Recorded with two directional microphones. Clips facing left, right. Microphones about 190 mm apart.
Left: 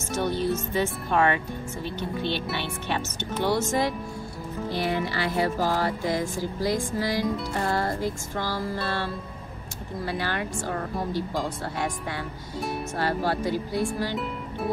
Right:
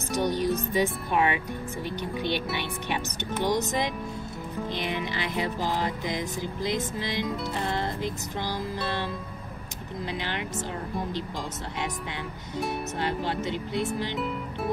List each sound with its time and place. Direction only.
0.1 s speech: 15° right (ahead or behind)
3.4 s music: 20° right (ahead or behind)
12.9 s music: 20° right (ahead or behind)
14.1 s speech: centre (ahead or behind)